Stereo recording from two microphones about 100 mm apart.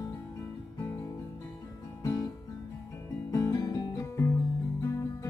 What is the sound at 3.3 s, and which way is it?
Guitar, 35° left (ahead or behind).